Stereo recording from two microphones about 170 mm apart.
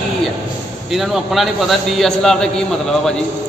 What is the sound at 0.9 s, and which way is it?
A man's voice, centre (ahead or behind).